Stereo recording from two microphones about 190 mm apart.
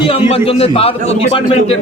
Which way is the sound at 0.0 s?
30° left (ahead or behind).